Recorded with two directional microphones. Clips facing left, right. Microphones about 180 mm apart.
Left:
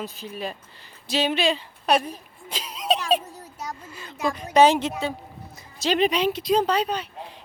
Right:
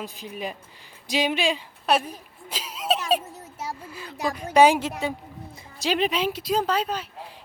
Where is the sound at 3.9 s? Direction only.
5° right (ahead or behind).